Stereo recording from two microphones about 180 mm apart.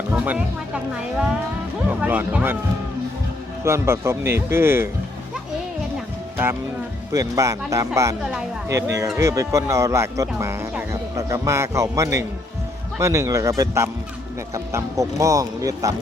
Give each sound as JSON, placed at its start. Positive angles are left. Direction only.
{"t": 0.1, "sound": "speech", "side_deg": -10}
{"t": 1.9, "sound": "speech", "side_deg": -10}
{"t": 3.6, "sound": "speech", "side_deg": -15}
{"t": 6.3, "sound": "music", "side_deg": -10}
{"t": 7.1, "sound": "speech", "side_deg": -15}